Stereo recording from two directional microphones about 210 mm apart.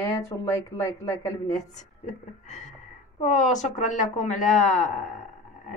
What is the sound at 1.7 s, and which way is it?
A woman's voice, 35° left (ahead or behind).